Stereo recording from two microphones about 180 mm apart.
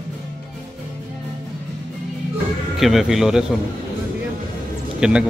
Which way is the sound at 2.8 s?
Centre (ahead or behind).